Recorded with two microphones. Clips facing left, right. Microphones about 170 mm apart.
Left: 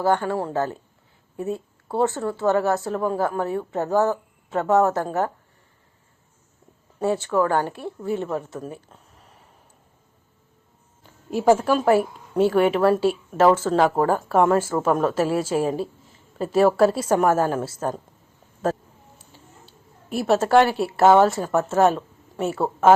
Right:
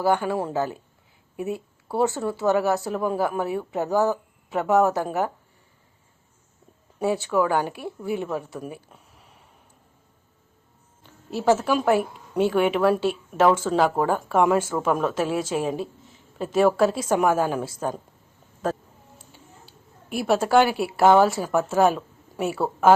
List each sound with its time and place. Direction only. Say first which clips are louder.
0.0 s speech: left 1 dB; 10° right (ahead or behind)
1.9 s speech: left 1 dB; 15° right (ahead or behind)
7.3 s speech: left 1 dB; 10° right (ahead or behind)
11.5 s a woman's voice: left 1 dB; 5° right (ahead or behind)
19.3 s a woman's voice: even; centre (ahead or behind)